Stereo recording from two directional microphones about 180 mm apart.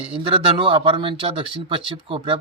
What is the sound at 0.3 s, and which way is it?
Speech, 30° right (ahead or behind).